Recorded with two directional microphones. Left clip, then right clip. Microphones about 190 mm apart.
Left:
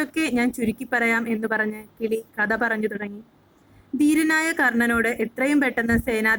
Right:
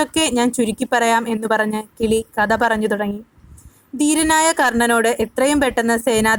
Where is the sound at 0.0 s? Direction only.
35° right (ahead or behind).